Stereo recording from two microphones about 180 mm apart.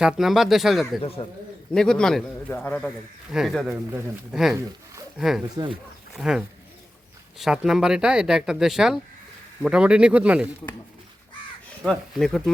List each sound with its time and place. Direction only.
0.0 s speech: centre (ahead or behind)
1.0 s speech: 30° left (ahead or behind)
1.7 s speech: 5° left (ahead or behind)
11.8 s speech: centre (ahead or behind)